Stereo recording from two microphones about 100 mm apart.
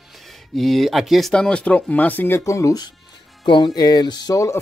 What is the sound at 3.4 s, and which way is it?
Music, 50° left (ahead or behind).